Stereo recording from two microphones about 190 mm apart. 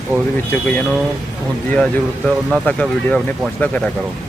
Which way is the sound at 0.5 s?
10° left (ahead or behind).